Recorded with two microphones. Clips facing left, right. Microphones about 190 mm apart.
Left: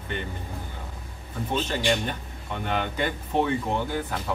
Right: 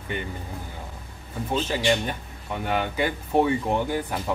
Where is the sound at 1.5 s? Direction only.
10° right (ahead or behind).